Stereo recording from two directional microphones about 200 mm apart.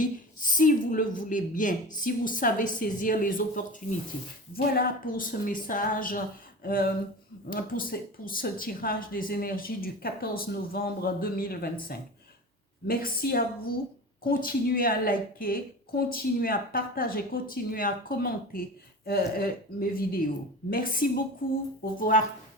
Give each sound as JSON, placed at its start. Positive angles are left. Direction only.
{"t": 0.0, "sound": "a woman's voice", "side_deg": 40}